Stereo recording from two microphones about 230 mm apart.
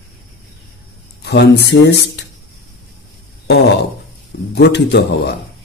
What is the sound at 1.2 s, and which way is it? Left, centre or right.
Speech, left.